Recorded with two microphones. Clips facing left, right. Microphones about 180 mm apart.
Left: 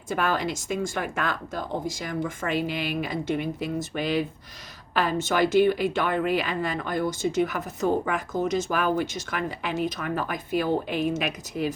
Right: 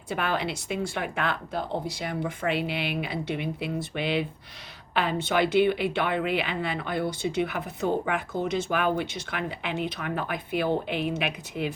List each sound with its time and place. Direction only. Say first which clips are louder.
0.1 s speech: left 2 dB; 45° left (ahead or behind)